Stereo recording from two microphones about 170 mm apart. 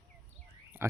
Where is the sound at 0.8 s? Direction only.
15° right (ahead or behind).